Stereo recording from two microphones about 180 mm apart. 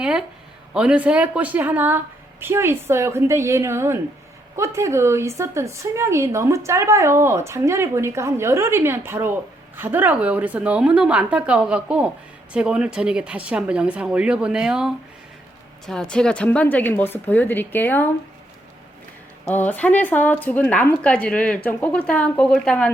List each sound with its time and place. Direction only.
0.0 s speech: 5° right (ahead or behind); by 18.1 s 10° left (ahead or behind)
19.5 s speech: 10° left (ahead or behind)